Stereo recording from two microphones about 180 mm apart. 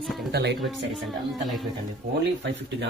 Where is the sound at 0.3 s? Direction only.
65° right (ahead or behind).